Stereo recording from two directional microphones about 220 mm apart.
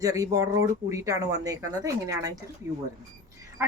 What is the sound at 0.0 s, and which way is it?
A woman's voice, 15° right (ahead or behind).